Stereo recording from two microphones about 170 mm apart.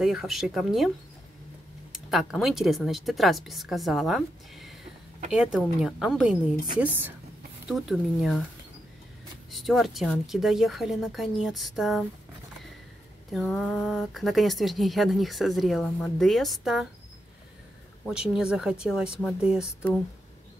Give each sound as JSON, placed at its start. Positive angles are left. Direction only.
{"t": 0.0, "sound": "speech", "side_deg": 0}
{"t": 2.0, "sound": "speech", "side_deg": 0}
{"t": 9.5, "sound": "speech", "side_deg": 0}
{"t": 13.3, "sound": "speech", "side_deg": 5}
{"t": 18.0, "sound": "speech", "side_deg": -5}